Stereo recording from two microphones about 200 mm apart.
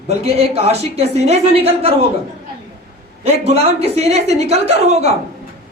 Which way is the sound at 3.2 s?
30° right (ahead or behind).